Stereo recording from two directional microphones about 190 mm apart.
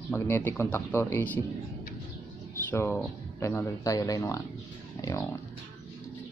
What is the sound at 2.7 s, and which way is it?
Speech, 10° left (ahead or behind).